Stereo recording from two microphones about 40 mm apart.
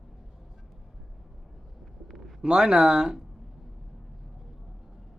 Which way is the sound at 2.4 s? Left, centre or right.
Right.